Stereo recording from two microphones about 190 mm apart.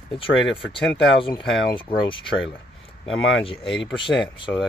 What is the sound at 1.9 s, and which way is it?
Speech, 30° left (ahead or behind).